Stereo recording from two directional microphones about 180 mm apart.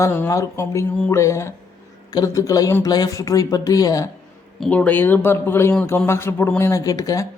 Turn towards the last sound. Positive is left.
turn(degrees=20)  # may be behind; listen again after turning